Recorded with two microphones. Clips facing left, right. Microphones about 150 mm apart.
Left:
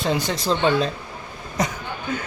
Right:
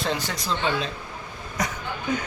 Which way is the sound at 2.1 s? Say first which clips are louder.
Right 1 dB; 15° right (ahead or behind).